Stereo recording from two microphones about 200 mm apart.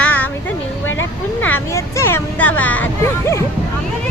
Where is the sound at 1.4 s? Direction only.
10° left (ahead or behind).